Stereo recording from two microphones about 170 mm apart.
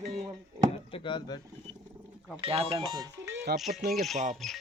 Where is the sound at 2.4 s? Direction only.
35° right (ahead or behind).